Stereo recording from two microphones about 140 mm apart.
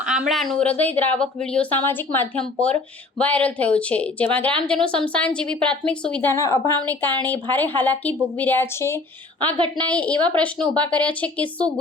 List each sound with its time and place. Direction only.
0.0 s a woman's voice: 5° right (ahead or behind)
6.3 s a woman's voice: 20° left (ahead or behind)